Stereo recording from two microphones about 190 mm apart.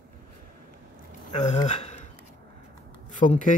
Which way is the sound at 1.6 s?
40° left (ahead or behind).